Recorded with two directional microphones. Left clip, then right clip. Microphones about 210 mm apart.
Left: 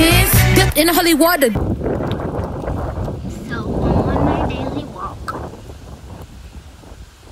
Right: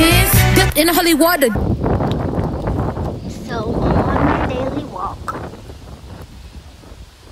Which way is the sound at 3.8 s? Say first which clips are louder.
Right 1 dB; 35° left (ahead or behind).